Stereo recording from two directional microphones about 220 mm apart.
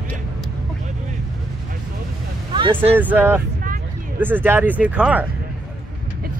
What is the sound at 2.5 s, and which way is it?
Speech, 20° right (ahead or behind).